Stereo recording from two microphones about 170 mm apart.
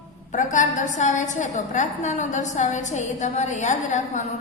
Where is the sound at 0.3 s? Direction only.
50° left (ahead or behind).